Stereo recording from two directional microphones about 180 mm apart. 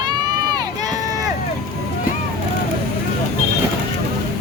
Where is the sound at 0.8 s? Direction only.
20° right (ahead or behind).